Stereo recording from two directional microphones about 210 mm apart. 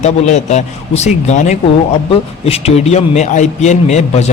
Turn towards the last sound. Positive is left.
turn(degrees=30)  # may be behind; listen again after turning